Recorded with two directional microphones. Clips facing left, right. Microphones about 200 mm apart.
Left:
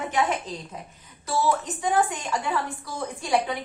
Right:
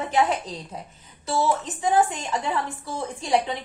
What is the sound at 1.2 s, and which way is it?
A woman's voice, 25° right (ahead or behind).